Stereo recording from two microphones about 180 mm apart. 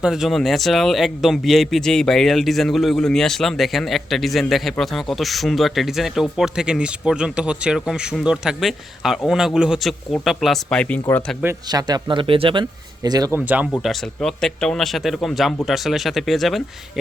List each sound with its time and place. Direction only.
0.0 s speech: centre (ahead or behind)
11.4 s speech: 20° right (ahead or behind)
13.4 s speech: 10° right (ahead or behind)
13.8 s speech: centre (ahead or behind)